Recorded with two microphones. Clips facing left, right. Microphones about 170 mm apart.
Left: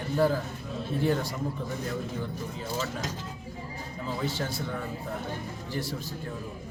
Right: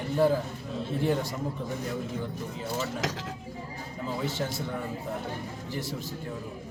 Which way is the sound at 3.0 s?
90° right.